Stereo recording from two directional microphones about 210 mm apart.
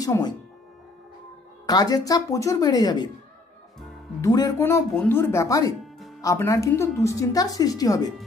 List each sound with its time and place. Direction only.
0.0 s speech: 15° left (ahead or behind)
1.7 s a woman's voice: 15° left (ahead or behind)
4.2 s a woman's voice: 15° left (ahead or behind)